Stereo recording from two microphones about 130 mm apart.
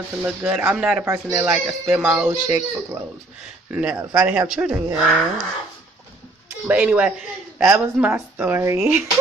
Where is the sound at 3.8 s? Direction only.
10° right (ahead or behind).